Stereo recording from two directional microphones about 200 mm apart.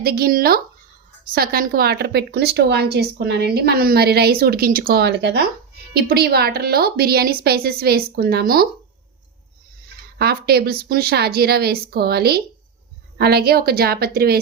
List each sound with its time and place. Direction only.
0.0 s speech: 50° right (ahead or behind)
10.2 s speech: 50° right (ahead or behind)